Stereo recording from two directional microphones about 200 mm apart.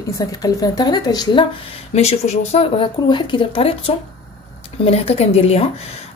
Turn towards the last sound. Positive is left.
turn(degrees=30)  # may be behind; listen again after turning